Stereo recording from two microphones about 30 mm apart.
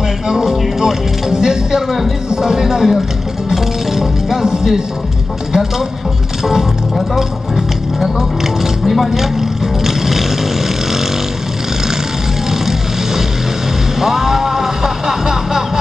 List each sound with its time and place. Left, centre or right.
0.3 s music: centre
2.2 s speech: centre
3.4 s music: centre
8.8 s speech: centre
9.8 s vehicle: centre
12.4 s vehicle: centre
13.9 s a sound: centre